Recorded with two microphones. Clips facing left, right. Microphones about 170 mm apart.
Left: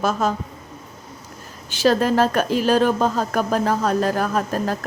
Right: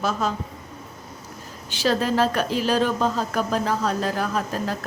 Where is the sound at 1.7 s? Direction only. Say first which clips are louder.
Left 4 dB; 50° left (ahead or behind).